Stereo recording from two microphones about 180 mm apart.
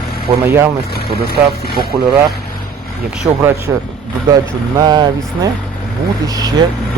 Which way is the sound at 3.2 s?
10° right (ahead or behind).